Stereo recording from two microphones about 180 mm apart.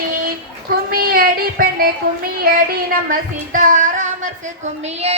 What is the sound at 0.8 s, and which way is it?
Child singing, 55° right (ahead or behind).